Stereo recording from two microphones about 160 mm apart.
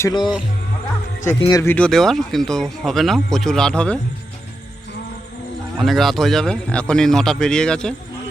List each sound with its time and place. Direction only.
0.0 s speech: 25° left (ahead or behind)
1.7 s speech: 5° left (ahead or behind)
5.8 s speech: centre (ahead or behind)